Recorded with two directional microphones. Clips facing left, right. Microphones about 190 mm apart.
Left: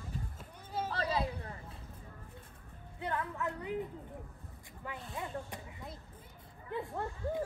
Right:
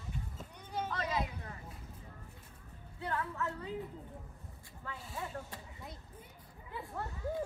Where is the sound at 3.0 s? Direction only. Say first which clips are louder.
Left 1 dB; 20° left (ahead or behind).